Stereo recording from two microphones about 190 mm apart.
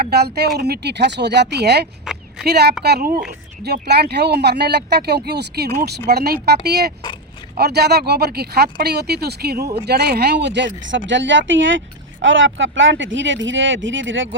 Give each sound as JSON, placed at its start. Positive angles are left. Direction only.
{"t": 0.0, "sound": "a woman's voice", "side_deg": -55}